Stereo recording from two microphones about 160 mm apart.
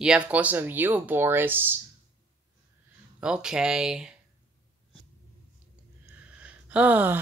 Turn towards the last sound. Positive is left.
turn(degrees=-10)  # may be behind; listen again after turning